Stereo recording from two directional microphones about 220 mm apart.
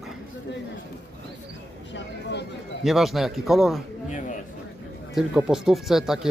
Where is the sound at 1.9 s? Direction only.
50° left (ahead or behind).